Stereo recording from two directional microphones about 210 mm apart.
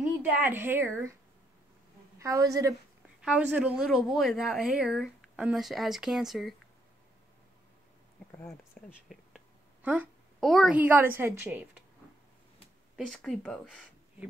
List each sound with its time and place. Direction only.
0.0 s a woman's voice: 10° right (ahead or behind)
2.1 s a woman's voice: 15° right (ahead or behind)
3.2 s a woman's voice: 5° right (ahead or behind)
8.5 s speech: centre (ahead or behind)
12.9 s a woman's voice: centre (ahead or behind)